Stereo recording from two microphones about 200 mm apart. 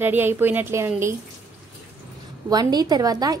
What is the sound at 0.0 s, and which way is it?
A woman's voice, 10° right (ahead or behind).